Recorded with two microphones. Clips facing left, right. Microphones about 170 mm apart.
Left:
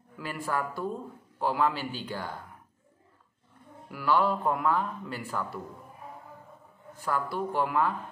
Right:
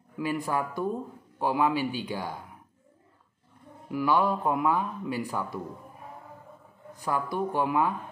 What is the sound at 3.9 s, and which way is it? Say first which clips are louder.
Speech: right 1 dB; 15° right (ahead or behind).